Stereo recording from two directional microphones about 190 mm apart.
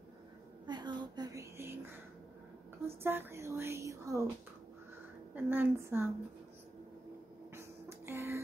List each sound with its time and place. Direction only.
0.7 s music: 20° right (ahead or behind)
3.0 s speech: 10° right (ahead or behind)
5.3 s speech: 10° right (ahead or behind)
7.5 s music: 10° right (ahead or behind)